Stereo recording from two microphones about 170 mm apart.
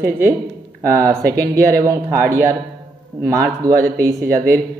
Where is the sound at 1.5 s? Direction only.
20° right (ahead or behind).